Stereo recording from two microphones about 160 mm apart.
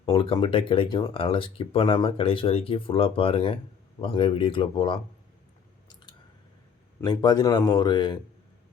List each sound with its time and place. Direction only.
0.0 s speech: 35° left (ahead or behind)
7.0 s a man's voice: 25° left (ahead or behind)